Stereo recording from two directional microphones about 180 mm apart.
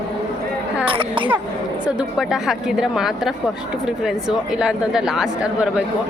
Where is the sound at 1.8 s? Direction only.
5° right (ahead or behind).